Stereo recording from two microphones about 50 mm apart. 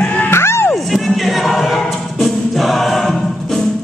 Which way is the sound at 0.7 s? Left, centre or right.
Centre.